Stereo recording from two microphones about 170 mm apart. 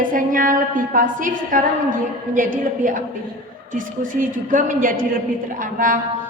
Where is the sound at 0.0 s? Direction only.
55° right (ahead or behind).